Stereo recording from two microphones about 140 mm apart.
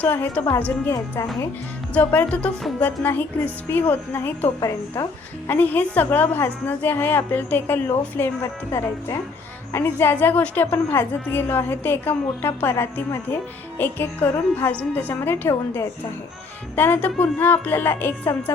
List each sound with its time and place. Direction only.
0.0 s a woman's voice: 15° left (ahead or behind)